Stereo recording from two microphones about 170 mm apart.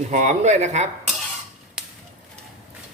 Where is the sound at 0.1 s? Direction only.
45° right (ahead or behind).